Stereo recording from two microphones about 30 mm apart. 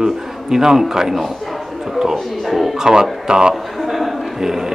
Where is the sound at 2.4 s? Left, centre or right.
Centre.